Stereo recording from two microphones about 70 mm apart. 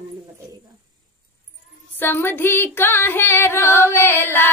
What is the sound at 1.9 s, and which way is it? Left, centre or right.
Female singing, left.